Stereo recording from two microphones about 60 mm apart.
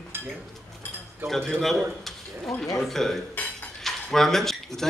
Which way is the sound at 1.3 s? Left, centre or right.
Centre.